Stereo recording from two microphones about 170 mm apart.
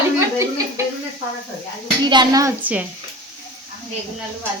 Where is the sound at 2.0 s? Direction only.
25° right (ahead or behind).